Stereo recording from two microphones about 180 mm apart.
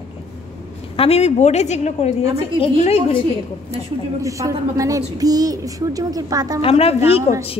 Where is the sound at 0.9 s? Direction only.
35° left (ahead or behind).